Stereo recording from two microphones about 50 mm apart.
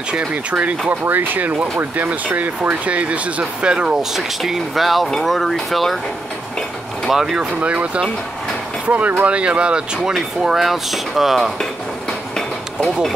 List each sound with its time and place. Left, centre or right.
0.1 s speech: right
2.9 s speech: right
4.2 s speech: centre
7.1 s speech: centre
7.6 s speech: right; by 11.5 s centre